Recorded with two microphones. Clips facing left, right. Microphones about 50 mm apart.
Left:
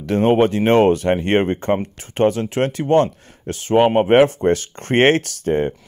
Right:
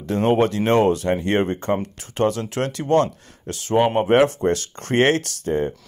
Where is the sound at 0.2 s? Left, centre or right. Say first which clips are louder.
Left 3 dB; left.